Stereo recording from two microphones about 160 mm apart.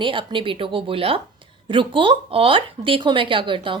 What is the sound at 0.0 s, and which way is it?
Speech, 30° right (ahead or behind).